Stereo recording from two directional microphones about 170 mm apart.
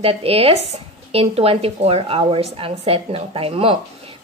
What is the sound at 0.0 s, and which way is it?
A woman's voice, 35° right (ahead or behind).